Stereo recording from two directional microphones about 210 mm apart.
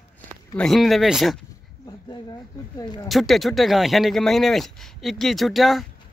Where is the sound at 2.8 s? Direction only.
15° left (ahead or behind).